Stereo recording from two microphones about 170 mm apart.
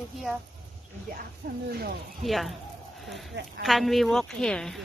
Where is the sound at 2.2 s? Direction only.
Centre (ahead or behind).